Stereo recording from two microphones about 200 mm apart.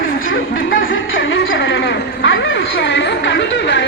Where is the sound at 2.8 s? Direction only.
65° left (ahead or behind).